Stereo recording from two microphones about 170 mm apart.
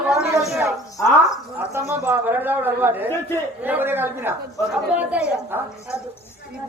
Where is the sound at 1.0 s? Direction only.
20° left (ahead or behind).